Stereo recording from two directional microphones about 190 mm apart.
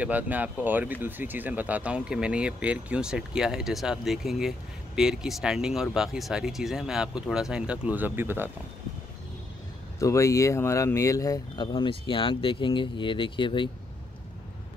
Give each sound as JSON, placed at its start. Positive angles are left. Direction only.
{"t": 0.0, "sound": "speech", "side_deg": -10}
{"t": 9.9, "sound": "speech", "side_deg": 15}